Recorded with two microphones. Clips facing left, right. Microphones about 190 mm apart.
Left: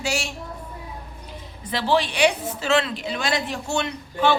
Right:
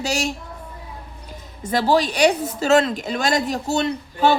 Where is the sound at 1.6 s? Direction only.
45° right (ahead or behind).